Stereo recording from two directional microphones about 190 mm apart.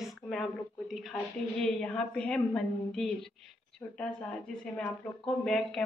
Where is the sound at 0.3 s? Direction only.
Centre (ahead or behind).